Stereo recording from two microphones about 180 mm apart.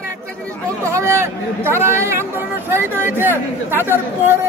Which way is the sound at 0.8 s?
15° right (ahead or behind).